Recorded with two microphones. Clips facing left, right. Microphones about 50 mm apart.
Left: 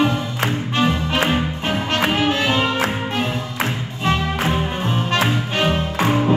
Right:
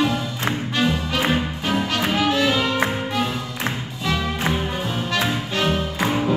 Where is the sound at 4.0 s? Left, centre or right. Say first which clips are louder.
Left 3 dB; left.